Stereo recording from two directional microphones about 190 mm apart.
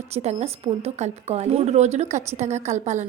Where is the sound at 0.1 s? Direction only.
35° right (ahead or behind).